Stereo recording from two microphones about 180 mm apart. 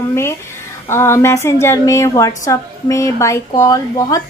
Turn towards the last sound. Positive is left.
turn(degrees=20)  # may be behind; listen again after turning